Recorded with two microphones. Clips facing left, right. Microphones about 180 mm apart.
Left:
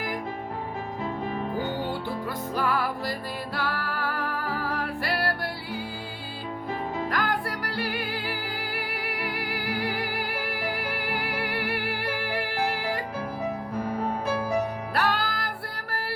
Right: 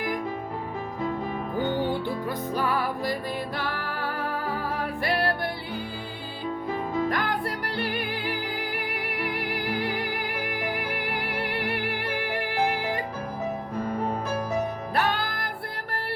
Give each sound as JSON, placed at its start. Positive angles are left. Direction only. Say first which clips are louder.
{"t": 2.6, "sound": "music", "louder": "left 1 dB", "side_deg": -15}
{"t": 7.1, "sound": "music", "louder": "right 1 dB", "side_deg": -25}
{"t": 14.9, "sound": "music", "louder": "even", "side_deg": -20}